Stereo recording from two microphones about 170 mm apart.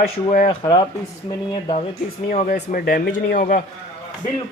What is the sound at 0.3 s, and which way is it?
Speech, 40° left (ahead or behind).